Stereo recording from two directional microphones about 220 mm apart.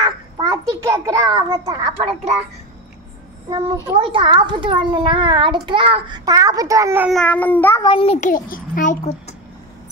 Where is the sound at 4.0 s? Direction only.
25° right (ahead or behind).